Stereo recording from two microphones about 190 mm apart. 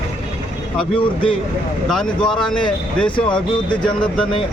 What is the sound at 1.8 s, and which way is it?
Speech, 5° left (ahead or behind).